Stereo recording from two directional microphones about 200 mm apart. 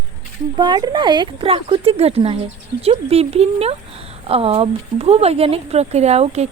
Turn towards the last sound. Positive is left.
turn(degrees=-35)  # may be behind; listen again after turning